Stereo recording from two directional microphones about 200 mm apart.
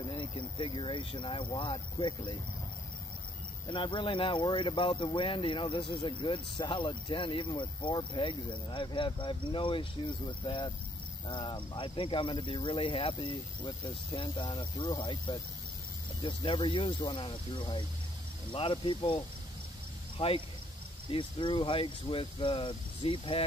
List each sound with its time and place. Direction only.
0.0 s speech: 25° left (ahead or behind)
3.6 s speech: 25° left (ahead or behind)